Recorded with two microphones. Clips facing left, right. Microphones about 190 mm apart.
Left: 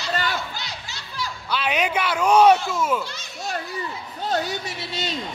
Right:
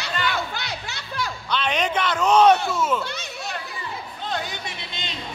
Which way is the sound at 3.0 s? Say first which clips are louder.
Right 1 dB; 65° right (ahead or behind).